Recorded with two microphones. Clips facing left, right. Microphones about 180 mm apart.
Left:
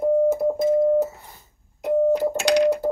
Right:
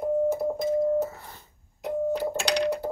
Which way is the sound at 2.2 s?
45° left (ahead or behind).